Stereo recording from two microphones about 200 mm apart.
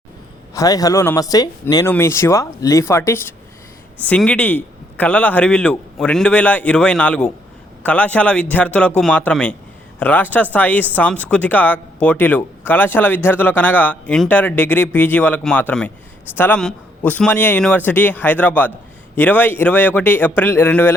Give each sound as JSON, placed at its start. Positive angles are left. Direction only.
{"t": 0.5, "sound": "speech", "side_deg": 15}